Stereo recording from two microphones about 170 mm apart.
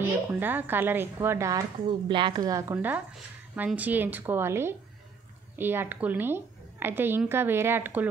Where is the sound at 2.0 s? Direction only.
30° right (ahead or behind).